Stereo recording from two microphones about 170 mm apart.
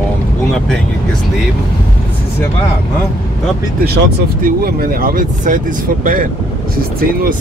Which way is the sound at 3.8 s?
65° right (ahead or behind).